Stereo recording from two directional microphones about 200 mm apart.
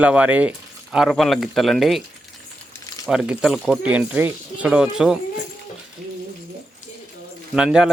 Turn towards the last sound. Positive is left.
turn(degrees=-5)  # may be behind; listen again after turning